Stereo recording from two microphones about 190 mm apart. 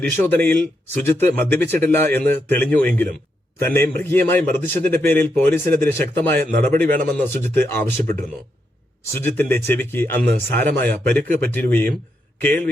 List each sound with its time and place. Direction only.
0.0 s speech: 10° left (ahead or behind)
6.9 s speech: 50° right (ahead or behind)
7.4 s speech: 10° left (ahead or behind)
12.4 s a sound: 10° left (ahead or behind)